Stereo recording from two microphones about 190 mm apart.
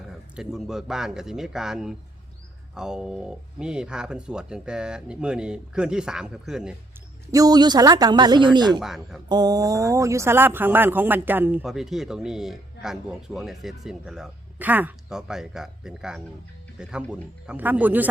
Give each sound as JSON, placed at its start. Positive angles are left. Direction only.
{"t": 0.3, "sound": "speech", "side_deg": 0}
{"t": 7.3, "sound": "speech", "side_deg": -20}
{"t": 8.8, "sound": "speech", "side_deg": 0}
{"t": 9.3, "sound": "speech", "side_deg": -20}